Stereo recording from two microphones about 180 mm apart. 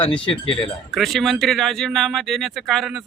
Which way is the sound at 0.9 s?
Centre (ahead or behind).